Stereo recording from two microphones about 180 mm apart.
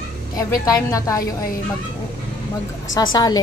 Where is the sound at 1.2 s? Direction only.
55° left (ahead or behind).